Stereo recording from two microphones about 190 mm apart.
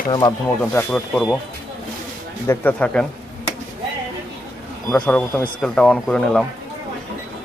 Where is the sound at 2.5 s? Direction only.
10° left (ahead or behind).